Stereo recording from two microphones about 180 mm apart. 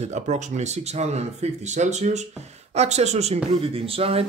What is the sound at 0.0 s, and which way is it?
A man's voice, 40° right (ahead or behind).